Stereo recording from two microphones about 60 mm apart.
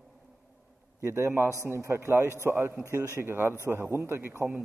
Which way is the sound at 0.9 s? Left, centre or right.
Right.